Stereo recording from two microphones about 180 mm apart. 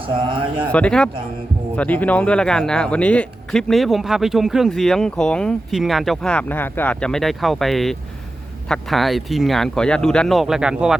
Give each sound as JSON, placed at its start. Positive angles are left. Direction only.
{"t": 0.0, "sound": "speech", "side_deg": -30}
{"t": 0.7, "sound": "speech", "side_deg": 5}